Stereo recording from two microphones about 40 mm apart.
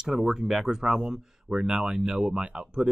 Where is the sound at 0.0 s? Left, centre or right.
Centre.